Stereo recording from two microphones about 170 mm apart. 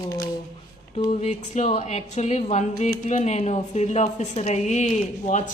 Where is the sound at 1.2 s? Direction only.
40° left (ahead or behind).